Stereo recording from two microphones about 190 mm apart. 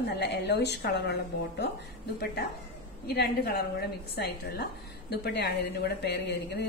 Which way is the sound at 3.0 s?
55° left (ahead or behind).